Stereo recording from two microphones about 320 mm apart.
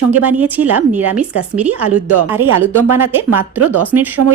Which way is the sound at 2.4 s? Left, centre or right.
Right.